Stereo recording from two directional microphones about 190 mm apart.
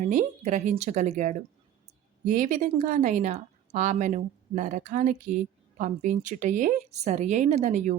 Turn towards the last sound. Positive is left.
turn(degrees=-40)  # may be behind; listen again after turning